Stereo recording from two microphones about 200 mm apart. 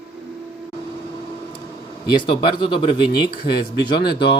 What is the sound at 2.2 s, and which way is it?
Speech, 25° left (ahead or behind).